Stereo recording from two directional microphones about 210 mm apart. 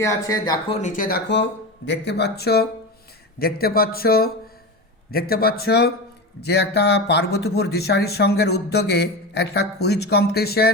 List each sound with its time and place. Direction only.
0.0 s speech: 15° left (ahead or behind)
0.8 s speech: 35° left (ahead or behind)